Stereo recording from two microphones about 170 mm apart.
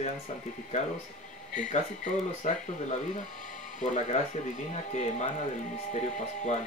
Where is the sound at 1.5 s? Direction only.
45° left (ahead or behind).